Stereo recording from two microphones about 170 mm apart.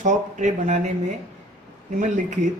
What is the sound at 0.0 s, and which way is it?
Speech, 45° right (ahead or behind).